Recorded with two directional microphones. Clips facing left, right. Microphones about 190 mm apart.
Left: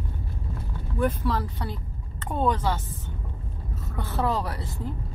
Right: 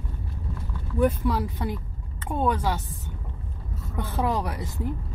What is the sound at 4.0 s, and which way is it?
Speech, 15° right (ahead or behind).